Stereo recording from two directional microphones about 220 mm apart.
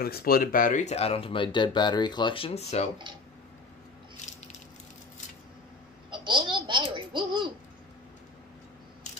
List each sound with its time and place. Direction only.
0.0 s speech: 45° left (ahead or behind)
6.0 s babbling: 20° right (ahead or behind)